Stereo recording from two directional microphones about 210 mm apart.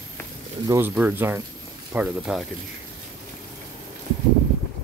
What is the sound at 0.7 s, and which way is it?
Speech, 10° right (ahead or behind).